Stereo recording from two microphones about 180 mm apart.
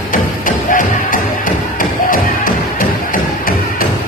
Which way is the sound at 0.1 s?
50° left (ahead or behind).